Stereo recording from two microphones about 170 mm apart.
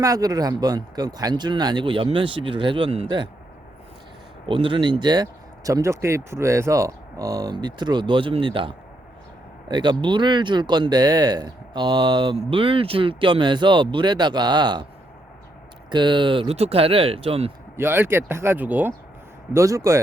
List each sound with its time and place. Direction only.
0.0 s speech: 20° right (ahead or behind)
4.4 s speech: 30° right (ahead or behind)
15.9 s speech: 25° right (ahead or behind)
17.7 s speech: 15° right (ahead or behind)